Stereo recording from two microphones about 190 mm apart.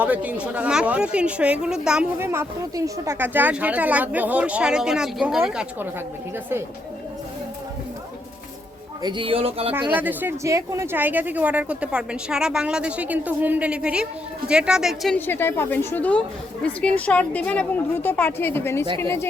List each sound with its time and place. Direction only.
0.0 s a woman's voice: 5° right (ahead or behind)
9.0 s speech: 25° right (ahead or behind)
9.9 s a woman's voice: 10° right (ahead or behind)
15.3 s a woman's voice: 10° left (ahead or behind)